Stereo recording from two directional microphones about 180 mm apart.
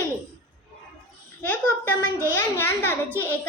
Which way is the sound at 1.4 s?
10° left (ahead or behind).